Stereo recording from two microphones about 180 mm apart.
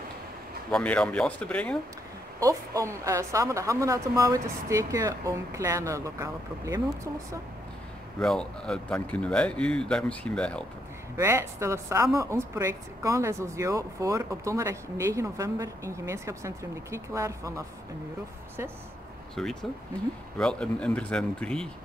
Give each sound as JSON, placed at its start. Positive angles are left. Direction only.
{"t": 0.7, "sound": "speech", "side_deg": 5}
{"t": 2.4, "sound": "a woman's voice", "side_deg": -20}
{"t": 8.2, "sound": "speech", "side_deg": 5}
{"t": 11.1, "sound": "a woman's voice", "side_deg": -15}
{"t": 19.4, "sound": "speech", "side_deg": 0}